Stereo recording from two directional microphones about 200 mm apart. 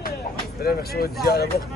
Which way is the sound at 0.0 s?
50° left (ahead or behind).